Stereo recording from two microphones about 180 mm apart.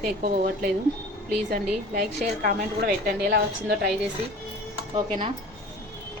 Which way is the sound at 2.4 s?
50° right (ahead or behind).